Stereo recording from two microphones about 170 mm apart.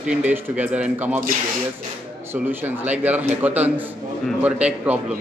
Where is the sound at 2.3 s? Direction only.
10° right (ahead or behind).